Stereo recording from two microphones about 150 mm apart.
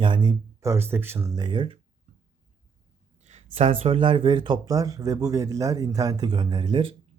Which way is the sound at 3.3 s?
45° right (ahead or behind).